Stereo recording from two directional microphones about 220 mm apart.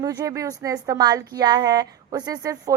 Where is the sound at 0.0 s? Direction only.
15° right (ahead or behind).